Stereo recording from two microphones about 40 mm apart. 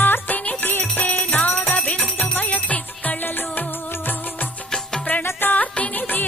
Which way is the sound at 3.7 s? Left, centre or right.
Left.